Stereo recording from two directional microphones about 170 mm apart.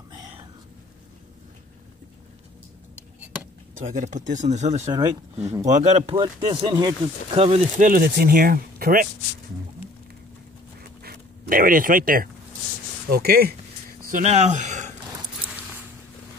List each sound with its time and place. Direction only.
0.1 s thunder: 25° right (ahead or behind)
3.7 s speech: 50° right (ahead or behind); by 6.9 s 25° right (ahead or behind)
7.3 s speech: 35° right (ahead or behind); by 9.1 s 55° right (ahead or behind)
10.8 s a sound: 65° right (ahead or behind)
14.2 s speech: 40° right (ahead or behind)
15.4 s a sound: 10° right (ahead or behind)